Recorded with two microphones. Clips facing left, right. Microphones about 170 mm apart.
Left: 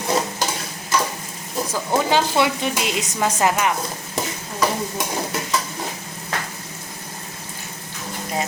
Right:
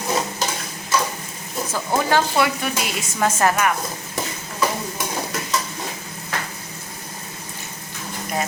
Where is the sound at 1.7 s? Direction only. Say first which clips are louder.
Even; 15° left (ahead or behind).